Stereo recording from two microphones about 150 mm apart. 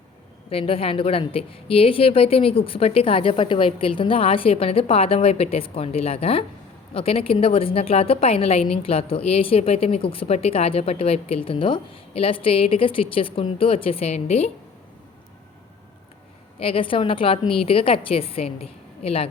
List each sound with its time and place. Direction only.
0.5 s a woman's voice: 40° left (ahead or behind)
16.6 s a woman's voice: 40° left (ahead or behind)